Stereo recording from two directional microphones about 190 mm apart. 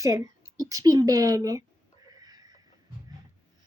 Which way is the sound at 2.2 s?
20° right (ahead or behind).